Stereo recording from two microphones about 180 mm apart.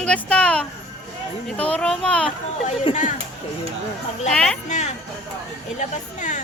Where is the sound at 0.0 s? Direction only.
5° left (ahead or behind).